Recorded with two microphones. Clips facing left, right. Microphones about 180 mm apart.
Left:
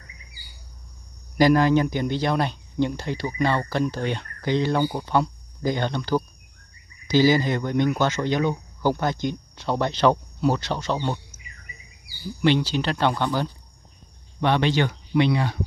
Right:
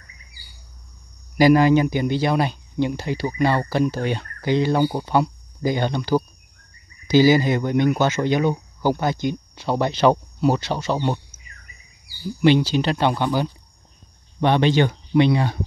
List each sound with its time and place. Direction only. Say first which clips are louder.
1.4 s speech: right 3 dB; 10° right (ahead or behind)
12.4 s speech: right 4 dB; 10° right (ahead or behind)